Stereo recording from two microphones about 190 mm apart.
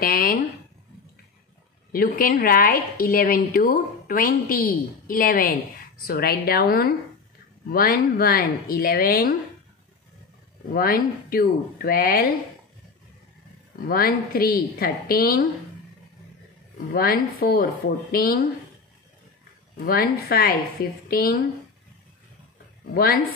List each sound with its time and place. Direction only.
0.0 s a woman's voice: 50° left (ahead or behind)
1.9 s a woman's voice: 50° left (ahead or behind)
10.7 s a woman's voice: 50° left (ahead or behind)
13.8 s a woman's voice: 50° left (ahead or behind)
16.9 s a woman's voice: 50° left (ahead or behind)
19.8 s a woman's voice: 50° left (ahead or behind)